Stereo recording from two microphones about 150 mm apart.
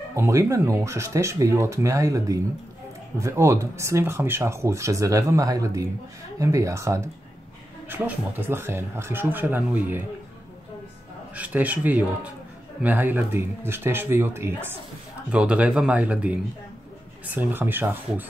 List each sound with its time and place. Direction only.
0.1 s speech: 20° right (ahead or behind)
11.3 s speech: 10° right (ahead or behind)